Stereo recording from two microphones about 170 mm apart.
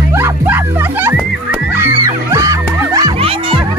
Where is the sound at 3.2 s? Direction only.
35° right (ahead or behind).